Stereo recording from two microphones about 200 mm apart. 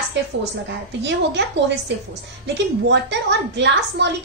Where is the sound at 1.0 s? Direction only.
60° right (ahead or behind).